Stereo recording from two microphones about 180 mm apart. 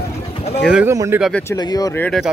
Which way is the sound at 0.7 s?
15° right (ahead or behind).